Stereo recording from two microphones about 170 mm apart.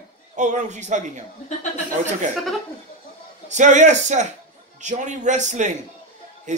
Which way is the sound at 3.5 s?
45° right (ahead or behind).